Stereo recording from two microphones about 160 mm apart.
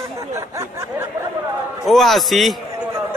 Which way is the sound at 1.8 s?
Centre (ahead or behind).